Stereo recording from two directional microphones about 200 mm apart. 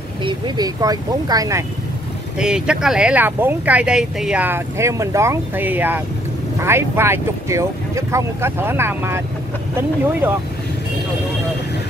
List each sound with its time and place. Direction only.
0.2 s speech: 20° right (ahead or behind)
2.3 s speech: 5° right (ahead or behind)
10.2 s speech: 10° right (ahead or behind)